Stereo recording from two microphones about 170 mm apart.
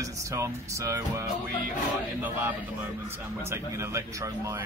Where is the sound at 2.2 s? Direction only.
10° right (ahead or behind).